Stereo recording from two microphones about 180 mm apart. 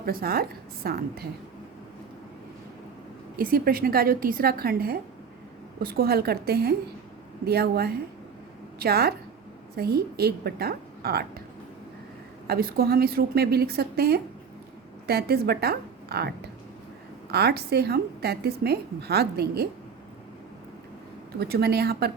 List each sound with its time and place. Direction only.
0.0 s a woman's voice: 55° right (ahead or behind)
3.3 s a woman's voice: 55° right (ahead or behind)
12.5 s a woman's voice: 55° right (ahead or behind)
17.3 s a woman's voice: 60° right (ahead or behind)
21.3 s a woman's voice: 60° right (ahead or behind)